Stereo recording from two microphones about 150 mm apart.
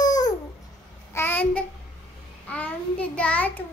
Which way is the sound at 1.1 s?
15° left (ahead or behind).